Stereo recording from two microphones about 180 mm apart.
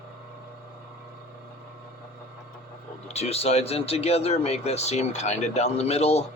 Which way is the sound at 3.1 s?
35° left (ahead or behind).